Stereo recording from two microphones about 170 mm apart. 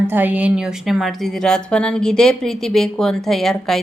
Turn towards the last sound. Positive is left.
turn(degrees=0)  # may be behind; listen again after turning